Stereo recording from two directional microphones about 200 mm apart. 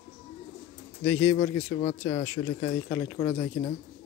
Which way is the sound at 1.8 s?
25° left (ahead or behind).